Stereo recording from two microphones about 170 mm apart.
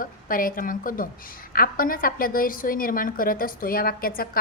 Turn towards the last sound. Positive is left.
turn(degrees=60)  # may be behind; listen again after turning